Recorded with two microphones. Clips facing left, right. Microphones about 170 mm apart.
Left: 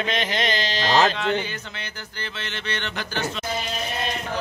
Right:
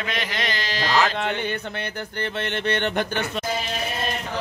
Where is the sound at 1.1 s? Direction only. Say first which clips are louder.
Even; 55° right (ahead or behind).